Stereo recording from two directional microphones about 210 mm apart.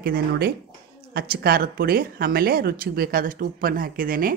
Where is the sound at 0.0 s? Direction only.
45° right (ahead or behind).